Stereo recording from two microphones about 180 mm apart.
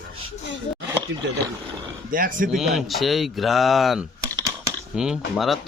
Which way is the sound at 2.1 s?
50° right (ahead or behind).